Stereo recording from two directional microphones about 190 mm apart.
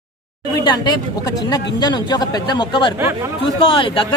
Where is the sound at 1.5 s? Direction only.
20° left (ahead or behind).